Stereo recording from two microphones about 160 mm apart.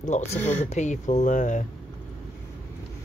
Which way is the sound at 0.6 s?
45° left (ahead or behind).